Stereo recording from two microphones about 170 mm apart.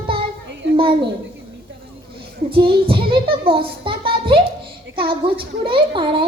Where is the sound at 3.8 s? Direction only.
30° right (ahead or behind).